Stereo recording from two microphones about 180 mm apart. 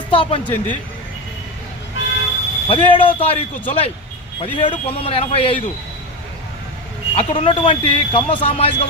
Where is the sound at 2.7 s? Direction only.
30° left (ahead or behind).